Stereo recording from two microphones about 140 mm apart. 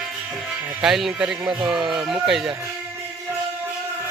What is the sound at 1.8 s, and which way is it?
Speech, 35° right (ahead or behind).